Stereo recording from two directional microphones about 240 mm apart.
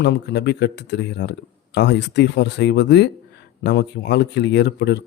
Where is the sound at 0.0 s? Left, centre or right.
Left.